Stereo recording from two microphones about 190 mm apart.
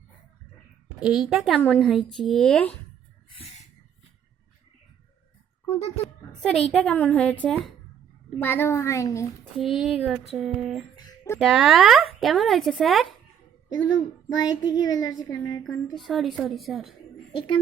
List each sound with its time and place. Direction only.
0.9 s speech: 5° right (ahead or behind)
3.2 s a sound: 30° left (ahead or behind)
6.4 s a child's voice: 5° left (ahead or behind)
9.6 s speech: centre (ahead or behind)
10.9 s a sound: 15° left (ahead or behind)
11.3 s speech: centre (ahead or behind)
13.7 s child singing: 90° left
14.3 s a child's voice: 20° left (ahead or behind)
15.6 s speech: centre (ahead or behind)